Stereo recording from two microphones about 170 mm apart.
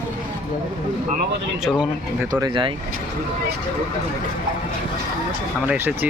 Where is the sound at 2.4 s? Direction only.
30° right (ahead or behind).